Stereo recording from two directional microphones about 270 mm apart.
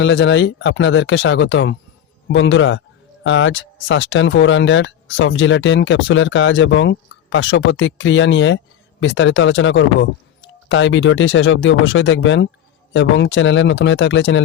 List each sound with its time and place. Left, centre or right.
0.0 s speech: left